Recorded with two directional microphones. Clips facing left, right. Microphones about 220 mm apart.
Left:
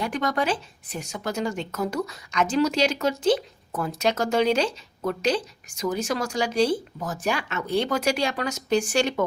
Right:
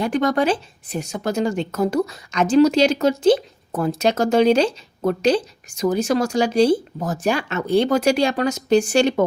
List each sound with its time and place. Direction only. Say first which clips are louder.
0.0 s speech: right 7 dB; 30° right (ahead or behind)